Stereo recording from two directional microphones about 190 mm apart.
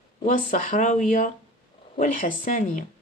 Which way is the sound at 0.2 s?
45° left (ahead or behind).